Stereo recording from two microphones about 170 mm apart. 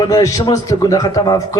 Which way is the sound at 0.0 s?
20° left (ahead or behind).